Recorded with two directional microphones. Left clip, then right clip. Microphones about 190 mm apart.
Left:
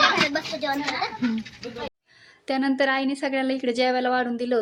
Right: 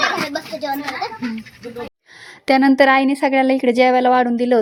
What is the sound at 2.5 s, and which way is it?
Speech, 45° right (ahead or behind).